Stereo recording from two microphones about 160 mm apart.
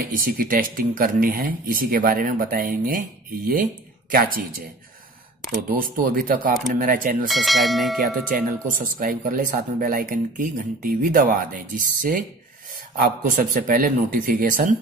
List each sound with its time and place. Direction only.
0.0 s speech: 60° right (ahead or behind)
4.1 s speech: 65° right (ahead or behind)
7.2 s bell: centre (ahead or behind)
8.6 s speech: 55° right (ahead or behind)